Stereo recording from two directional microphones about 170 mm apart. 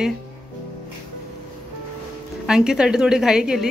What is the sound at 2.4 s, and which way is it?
A woman's voice, 5° right (ahead or behind).